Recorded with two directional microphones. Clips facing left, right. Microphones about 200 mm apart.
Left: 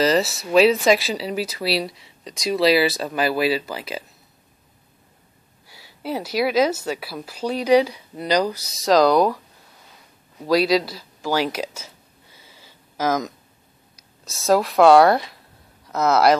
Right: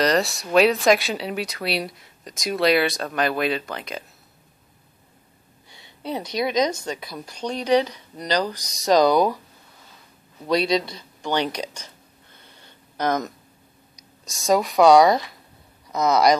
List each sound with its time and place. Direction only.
0.0 s speech: centre (ahead or behind)
5.7 s speech: 5° left (ahead or behind)
10.4 s a sound: 5° left (ahead or behind)
14.4 s speech: centre (ahead or behind)